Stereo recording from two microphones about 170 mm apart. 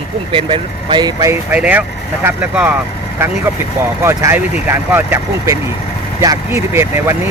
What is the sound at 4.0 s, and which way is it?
Speech, 15° right (ahead or behind).